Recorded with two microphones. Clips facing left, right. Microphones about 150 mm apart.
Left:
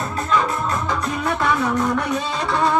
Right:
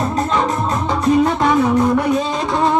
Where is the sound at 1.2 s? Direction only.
20° right (ahead or behind).